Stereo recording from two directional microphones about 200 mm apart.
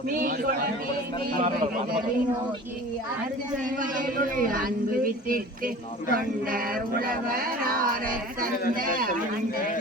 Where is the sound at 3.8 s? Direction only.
45° right (ahead or behind).